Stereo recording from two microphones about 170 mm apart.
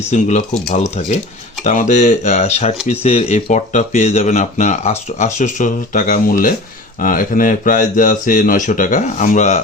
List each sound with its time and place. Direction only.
0.1 s speech: 45° left (ahead or behind)